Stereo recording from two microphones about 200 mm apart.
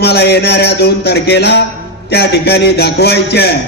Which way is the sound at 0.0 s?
55° left (ahead or behind).